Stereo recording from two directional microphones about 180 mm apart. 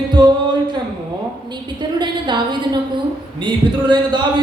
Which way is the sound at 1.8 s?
25° right (ahead or behind).